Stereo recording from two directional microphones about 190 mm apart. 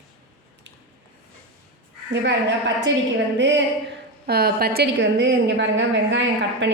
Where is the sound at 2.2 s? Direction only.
65° right (ahead or behind).